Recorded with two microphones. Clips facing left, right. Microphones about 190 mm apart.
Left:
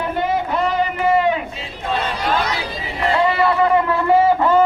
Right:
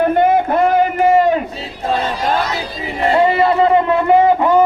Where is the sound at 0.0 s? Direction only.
55° right (ahead or behind).